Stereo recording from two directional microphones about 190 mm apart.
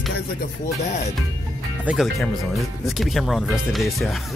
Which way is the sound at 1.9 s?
Centre (ahead or behind).